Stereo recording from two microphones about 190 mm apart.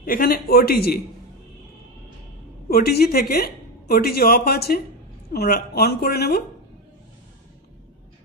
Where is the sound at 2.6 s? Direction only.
55° left (ahead or behind).